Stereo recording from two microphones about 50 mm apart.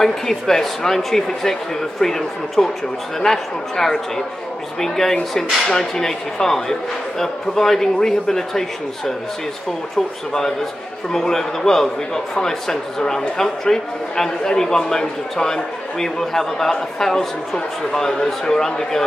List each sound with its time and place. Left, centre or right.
0.0 s a man's voice: centre
10.3 s a man's voice: centre